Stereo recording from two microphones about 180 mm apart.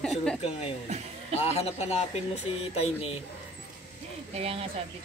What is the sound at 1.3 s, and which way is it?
Speech, 35° left (ahead or behind).